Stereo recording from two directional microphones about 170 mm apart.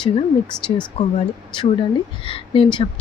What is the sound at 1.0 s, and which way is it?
A woman's voice, 35° left (ahead or behind).